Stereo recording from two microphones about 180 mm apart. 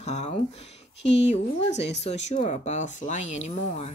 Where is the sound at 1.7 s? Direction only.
75° left (ahead or behind).